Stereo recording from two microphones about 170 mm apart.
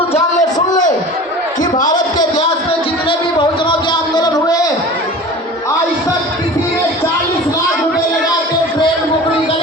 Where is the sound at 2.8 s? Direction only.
30° left (ahead or behind).